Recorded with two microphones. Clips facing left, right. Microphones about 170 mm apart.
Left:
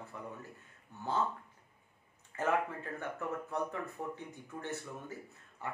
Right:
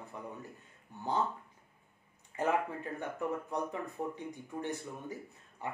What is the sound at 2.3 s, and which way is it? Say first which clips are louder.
Speech: right 1 dB; 15° right (ahead or behind).